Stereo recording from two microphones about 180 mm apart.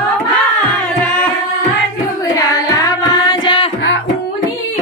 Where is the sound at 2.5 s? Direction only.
20° left (ahead or behind).